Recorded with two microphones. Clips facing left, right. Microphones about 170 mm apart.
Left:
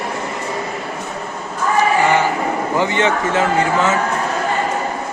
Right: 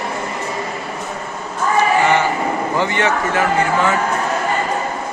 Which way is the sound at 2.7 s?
20° left (ahead or behind).